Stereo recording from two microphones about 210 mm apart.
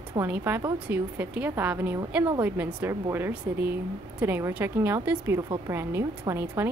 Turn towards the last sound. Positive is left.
turn(degrees=-10)  # may be behind; listen again after turning